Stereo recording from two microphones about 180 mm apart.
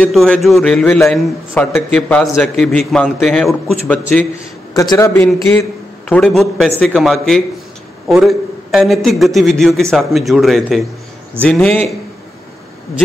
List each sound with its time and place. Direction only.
0.0 s a man's voice: 5° left (ahead or behind)